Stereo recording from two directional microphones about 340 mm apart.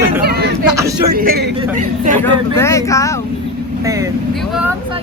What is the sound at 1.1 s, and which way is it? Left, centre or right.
Speech, right.